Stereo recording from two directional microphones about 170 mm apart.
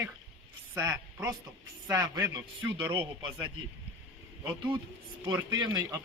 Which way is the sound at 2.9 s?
30° right (ahead or behind).